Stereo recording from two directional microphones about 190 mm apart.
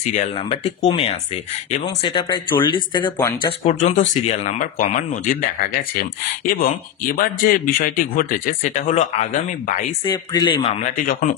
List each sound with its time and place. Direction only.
0.0 s speech: 40° left (ahead or behind)
0.4 s speech: 30° left (ahead or behind)
2.0 s speech: 25° left (ahead or behind)
3.6 s speech: 40° left (ahead or behind)
7.2 s a man's voice: 50° left (ahead or behind)
10.0 s speech: 20° left (ahead or behind)
11.0 s a man's voice: 45° left (ahead or behind)